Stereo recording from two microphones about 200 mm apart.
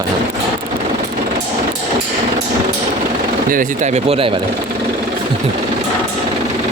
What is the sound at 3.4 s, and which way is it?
Speech, 40° right (ahead or behind).